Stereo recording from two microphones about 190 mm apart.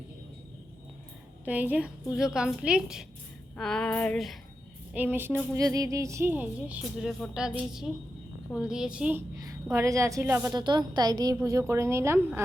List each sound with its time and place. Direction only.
1.5 s a woman's voice: 10° right (ahead or behind)
4.9 s a woman's voice: 10° right (ahead or behind)
8.5 s a woman's voice: 5° right (ahead or behind)